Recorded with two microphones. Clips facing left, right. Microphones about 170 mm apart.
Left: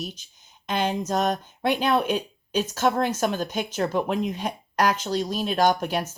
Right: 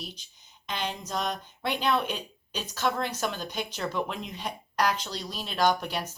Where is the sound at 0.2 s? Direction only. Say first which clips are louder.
Left 3 dB; 45° left (ahead or behind).